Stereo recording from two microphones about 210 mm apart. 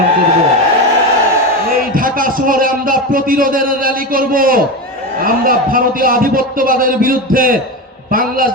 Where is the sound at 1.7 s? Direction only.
40° right (ahead or behind).